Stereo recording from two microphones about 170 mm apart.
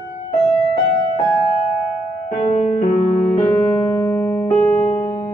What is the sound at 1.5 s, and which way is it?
Music, 40° left (ahead or behind).